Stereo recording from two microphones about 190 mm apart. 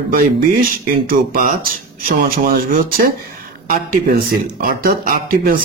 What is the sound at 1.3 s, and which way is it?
Speech, 50° right (ahead or behind).